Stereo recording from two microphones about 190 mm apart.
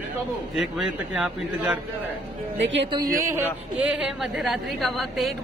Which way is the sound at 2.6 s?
70° right (ahead or behind).